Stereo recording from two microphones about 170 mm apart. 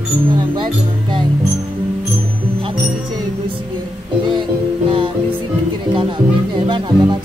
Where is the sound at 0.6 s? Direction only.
30° right (ahead or behind).